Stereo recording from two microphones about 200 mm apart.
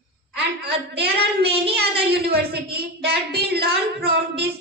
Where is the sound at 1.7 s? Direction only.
55° right (ahead or behind).